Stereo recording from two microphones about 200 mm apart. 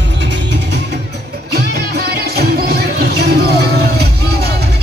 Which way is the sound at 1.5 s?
55° right (ahead or behind).